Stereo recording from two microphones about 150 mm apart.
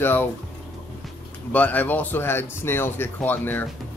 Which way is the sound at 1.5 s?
10° left (ahead or behind).